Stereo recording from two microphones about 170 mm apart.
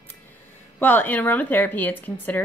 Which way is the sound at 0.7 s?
10° left (ahead or behind).